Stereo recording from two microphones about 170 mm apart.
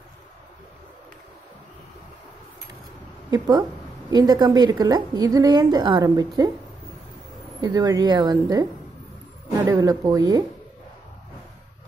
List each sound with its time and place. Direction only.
3.3 s a woman's voice: 25° right (ahead or behind)
7.6 s a woman's voice: 20° right (ahead or behind)